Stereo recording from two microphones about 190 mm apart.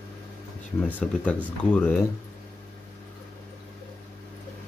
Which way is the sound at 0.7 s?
10° left (ahead or behind).